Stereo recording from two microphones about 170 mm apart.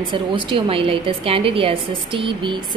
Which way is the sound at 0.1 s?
30° right (ahead or behind).